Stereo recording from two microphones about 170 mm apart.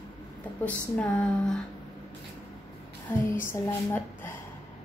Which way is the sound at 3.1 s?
10° left (ahead or behind).